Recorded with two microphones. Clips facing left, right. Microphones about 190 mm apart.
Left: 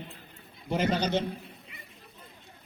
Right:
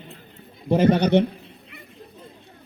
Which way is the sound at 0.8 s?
60° right (ahead or behind).